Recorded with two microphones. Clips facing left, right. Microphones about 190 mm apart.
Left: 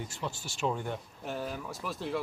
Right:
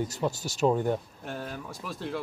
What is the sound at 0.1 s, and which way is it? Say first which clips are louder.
Speech: right 8 dB; 40° right (ahead or behind).